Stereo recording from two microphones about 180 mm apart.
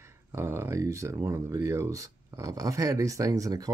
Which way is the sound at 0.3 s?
15° right (ahead or behind).